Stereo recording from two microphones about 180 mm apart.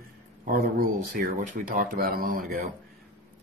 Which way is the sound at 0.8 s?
55° right (ahead or behind).